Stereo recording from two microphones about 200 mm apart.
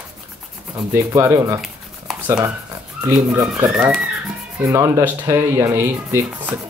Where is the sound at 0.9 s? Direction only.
15° right (ahead or behind).